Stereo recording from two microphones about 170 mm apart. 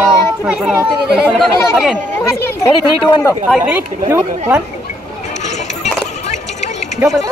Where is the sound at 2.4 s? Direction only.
15° left (ahead or behind).